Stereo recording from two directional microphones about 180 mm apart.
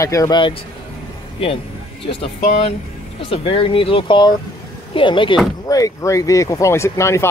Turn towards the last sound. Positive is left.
turn(degrees=15)  # may be behind; listen again after turning